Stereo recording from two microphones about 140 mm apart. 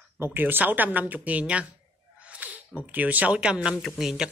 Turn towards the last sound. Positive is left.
turn(degrees=-5)  # may be behind; listen again after turning